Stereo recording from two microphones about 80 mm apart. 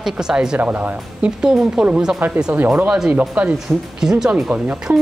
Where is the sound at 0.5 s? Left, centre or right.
Right.